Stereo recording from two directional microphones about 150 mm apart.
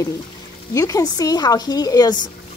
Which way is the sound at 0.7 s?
20° left (ahead or behind).